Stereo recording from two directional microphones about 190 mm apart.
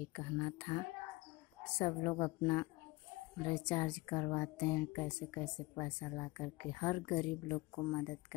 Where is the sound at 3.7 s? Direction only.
25° left (ahead or behind).